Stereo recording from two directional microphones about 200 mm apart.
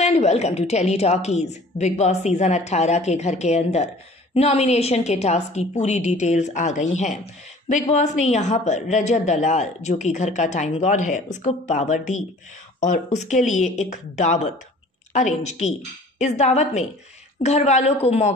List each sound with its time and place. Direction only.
0.0 s a woman's voice: 35° left (ahead or behind)
7.9 s a woman's voice: 35° left (ahead or behind)